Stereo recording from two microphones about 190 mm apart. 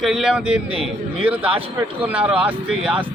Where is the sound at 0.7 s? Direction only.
30° right (ahead or behind).